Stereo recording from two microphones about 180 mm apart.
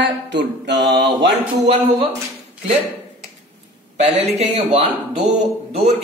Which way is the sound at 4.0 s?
40° right (ahead or behind).